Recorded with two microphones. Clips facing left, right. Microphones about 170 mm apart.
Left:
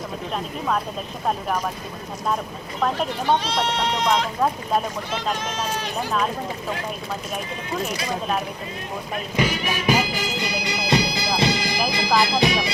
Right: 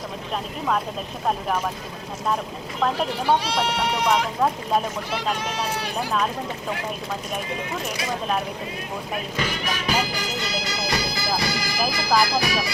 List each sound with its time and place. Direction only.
2.8 s speech: 5° right (ahead or behind)
9.3 s speech: 10° left (ahead or behind)
10.4 s bagpipes: 20° left (ahead or behind)